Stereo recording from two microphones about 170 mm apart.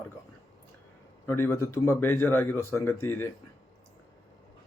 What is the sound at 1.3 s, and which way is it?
Speech, 15° left (ahead or behind).